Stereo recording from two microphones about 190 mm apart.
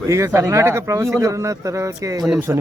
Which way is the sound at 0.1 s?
15° right (ahead or behind).